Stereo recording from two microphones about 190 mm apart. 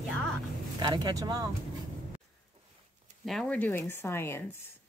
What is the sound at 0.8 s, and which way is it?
Speech, 20° right (ahead or behind).